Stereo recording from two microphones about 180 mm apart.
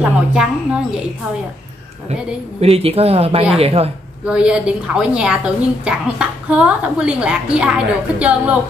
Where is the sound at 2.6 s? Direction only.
35° right (ahead or behind).